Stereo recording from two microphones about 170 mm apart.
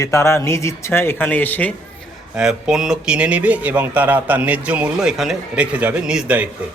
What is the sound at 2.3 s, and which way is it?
Speech, 5° right (ahead or behind).